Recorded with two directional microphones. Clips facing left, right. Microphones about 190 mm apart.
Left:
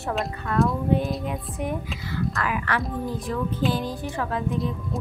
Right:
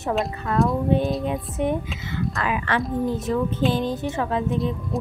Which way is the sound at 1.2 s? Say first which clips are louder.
Right 5 dB; 25° right (ahead or behind).